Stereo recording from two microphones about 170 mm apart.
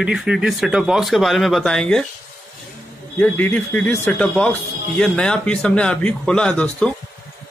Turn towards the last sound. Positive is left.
turn(degrees=5)  # may be behind; listen again after turning